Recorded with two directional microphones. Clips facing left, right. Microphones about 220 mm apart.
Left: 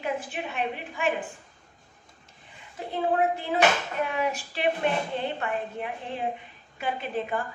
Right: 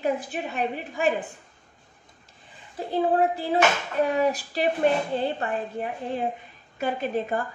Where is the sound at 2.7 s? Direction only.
35° right (ahead or behind).